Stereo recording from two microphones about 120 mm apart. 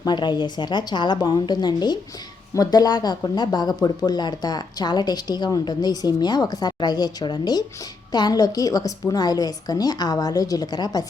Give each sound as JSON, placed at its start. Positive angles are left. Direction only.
{"t": 0.0, "sound": "speech", "side_deg": 40}